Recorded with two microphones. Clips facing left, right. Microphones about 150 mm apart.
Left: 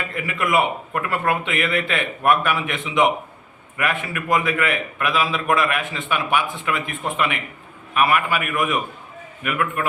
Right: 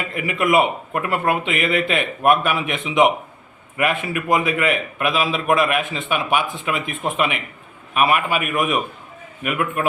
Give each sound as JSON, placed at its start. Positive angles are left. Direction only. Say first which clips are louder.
{"t": 0.3, "sound": "a man's voice", "louder": "right 3 dB", "side_deg": -20}